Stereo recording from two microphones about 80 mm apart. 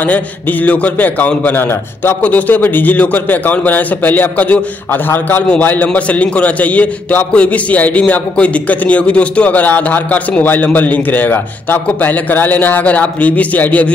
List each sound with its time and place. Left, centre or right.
0.0 s a man's voice: left